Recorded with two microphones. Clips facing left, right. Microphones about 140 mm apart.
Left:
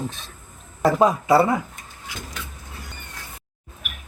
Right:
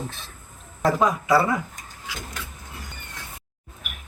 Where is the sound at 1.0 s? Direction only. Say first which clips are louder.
Left 4 dB; 25° left (ahead or behind).